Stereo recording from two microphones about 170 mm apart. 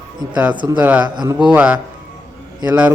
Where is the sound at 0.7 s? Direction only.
10° right (ahead or behind).